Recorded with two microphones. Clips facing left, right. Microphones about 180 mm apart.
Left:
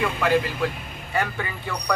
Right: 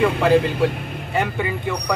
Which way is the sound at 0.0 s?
30° right (ahead or behind).